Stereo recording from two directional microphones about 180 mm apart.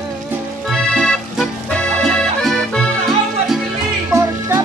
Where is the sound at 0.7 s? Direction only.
Centre (ahead or behind).